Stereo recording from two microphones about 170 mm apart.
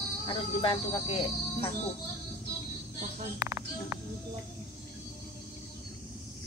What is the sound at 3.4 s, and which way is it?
Speech, 20° right (ahead or behind).